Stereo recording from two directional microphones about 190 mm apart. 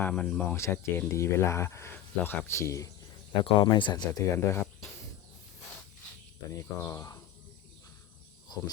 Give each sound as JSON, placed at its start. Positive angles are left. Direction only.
{"t": 0.0, "sound": "speech", "side_deg": 5}
{"t": 6.5, "sound": "speech", "side_deg": 15}
{"t": 8.5, "sound": "wild animals", "side_deg": 20}